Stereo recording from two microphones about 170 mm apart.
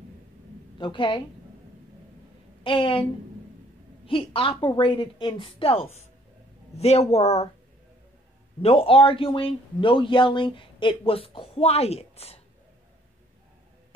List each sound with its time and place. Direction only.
0.7 s a woman's voice: 30° left (ahead or behind)
2.6 s a man's voice: 30° left (ahead or behind)
8.6 s a man's voice: 35° left (ahead or behind)